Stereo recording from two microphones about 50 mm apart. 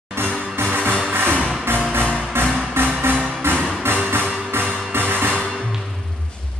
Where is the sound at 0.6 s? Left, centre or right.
Right.